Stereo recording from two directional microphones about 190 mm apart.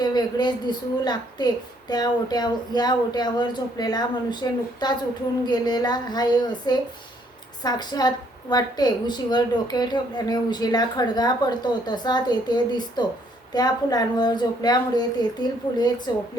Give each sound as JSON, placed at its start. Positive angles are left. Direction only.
{"t": 0.0, "sound": "a woman's voice", "side_deg": 20}